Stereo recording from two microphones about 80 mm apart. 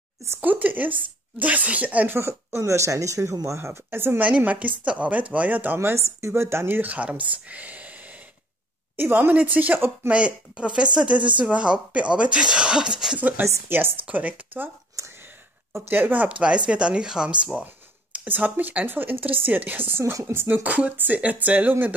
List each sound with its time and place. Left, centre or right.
0.4 s a woman's voice: right
2.1 s speech: right
4.2 s a woman's voice: centre
7.4 s a sound: centre
8.9 s a woman's voice: right
13.7 s a woman's voice: right
15.7 s a woman's voice: right